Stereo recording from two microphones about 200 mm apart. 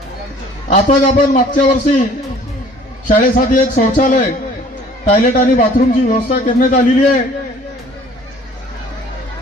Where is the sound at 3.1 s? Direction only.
40° left (ahead or behind).